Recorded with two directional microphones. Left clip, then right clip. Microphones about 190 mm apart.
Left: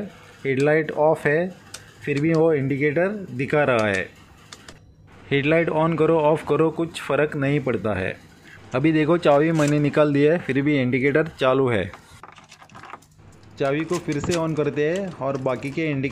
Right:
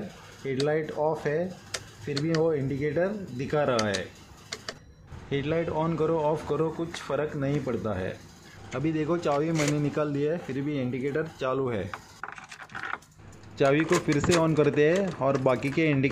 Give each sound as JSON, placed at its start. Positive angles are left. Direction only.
{"t": 0.4, "sound": "speech", "side_deg": 25}
{"t": 5.3, "sound": "speech", "side_deg": 20}
{"t": 13.6, "sound": "speech", "side_deg": 0}